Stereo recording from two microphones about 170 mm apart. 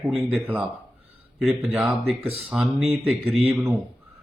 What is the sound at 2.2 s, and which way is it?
Speech, 35° right (ahead or behind).